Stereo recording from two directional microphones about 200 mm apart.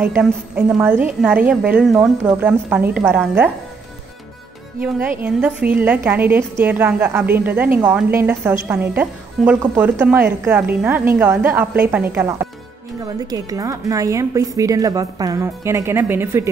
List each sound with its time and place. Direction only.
0.0 s a woman's voice: 5° right (ahead or behind)
5.2 s a woman's voice: 5° right (ahead or behind)